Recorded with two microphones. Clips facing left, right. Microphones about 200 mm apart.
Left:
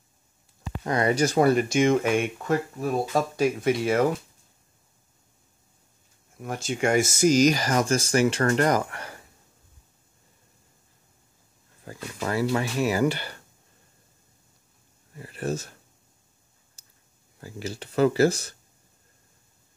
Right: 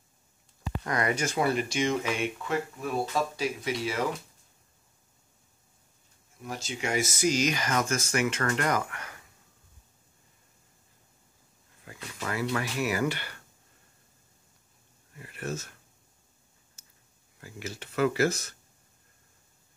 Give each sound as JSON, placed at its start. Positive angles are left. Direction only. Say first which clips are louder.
{"t": 0.8, "sound": "speech", "louder": "left 6 dB", "side_deg": 30}
{"t": 6.4, "sound": "speech", "louder": "left 8 dB", "side_deg": 50}
{"t": 11.8, "sound": "a sound", "louder": "left 6 dB", "side_deg": 35}
{"t": 12.7, "sound": "speech", "louder": "left 5 dB", "side_deg": 30}
{"t": 15.1, "sound": "speech", "louder": "left 6 dB", "side_deg": 30}
{"t": 17.4, "sound": "speech", "louder": "left 5 dB", "side_deg": 30}